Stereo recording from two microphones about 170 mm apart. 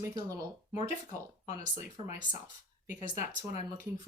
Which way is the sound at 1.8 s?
45° left (ahead or behind).